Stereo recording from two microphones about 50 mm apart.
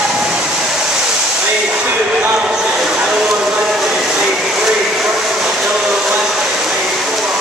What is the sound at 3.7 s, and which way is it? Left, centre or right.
Train, centre.